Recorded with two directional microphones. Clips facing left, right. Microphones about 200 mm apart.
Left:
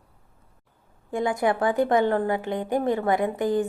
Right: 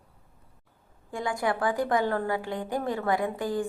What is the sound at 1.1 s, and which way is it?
A woman's voice, 20° left (ahead or behind).